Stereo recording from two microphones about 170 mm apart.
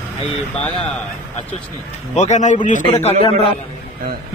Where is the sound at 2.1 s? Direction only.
45° left (ahead or behind).